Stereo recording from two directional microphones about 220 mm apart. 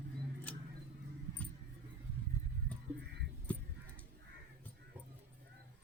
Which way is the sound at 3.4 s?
5° left (ahead or behind).